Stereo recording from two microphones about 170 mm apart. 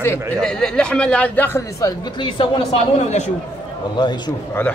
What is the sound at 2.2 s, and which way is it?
Speech, 30° left (ahead or behind).